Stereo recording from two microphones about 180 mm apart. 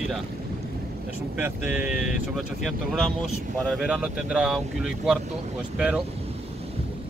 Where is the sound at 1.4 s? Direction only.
10° right (ahead or behind).